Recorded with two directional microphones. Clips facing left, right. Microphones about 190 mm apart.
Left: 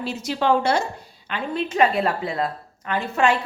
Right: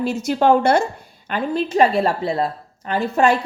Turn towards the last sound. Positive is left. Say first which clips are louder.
# right 4 dB
turn(degrees=-35)  # may be behind; listen again after turning